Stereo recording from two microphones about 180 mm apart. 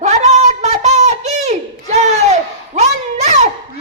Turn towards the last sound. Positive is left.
turn(degrees=-40)  # may be behind; listen again after turning